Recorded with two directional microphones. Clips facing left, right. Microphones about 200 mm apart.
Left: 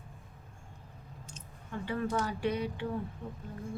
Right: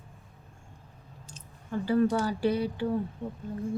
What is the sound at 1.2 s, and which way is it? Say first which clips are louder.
Speech: right 8 dB; 35° right (ahead or behind).